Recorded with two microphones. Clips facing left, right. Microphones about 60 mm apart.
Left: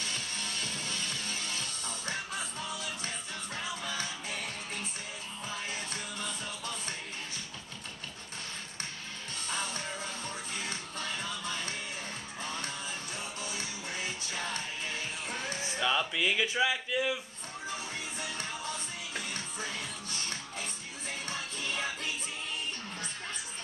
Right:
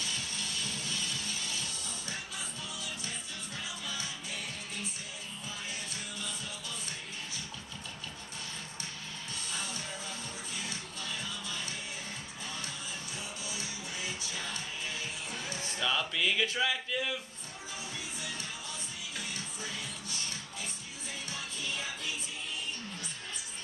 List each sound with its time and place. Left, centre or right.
0.0 s music: left
9.5 s music: left
15.6 s a sound: centre
18.2 s music: left
21.3 s music: left